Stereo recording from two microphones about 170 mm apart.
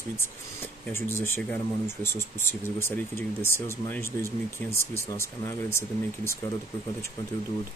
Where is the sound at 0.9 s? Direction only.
15° left (ahead or behind).